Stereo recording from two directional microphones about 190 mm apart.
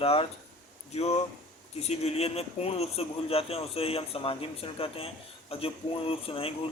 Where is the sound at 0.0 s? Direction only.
30° left (ahead or behind).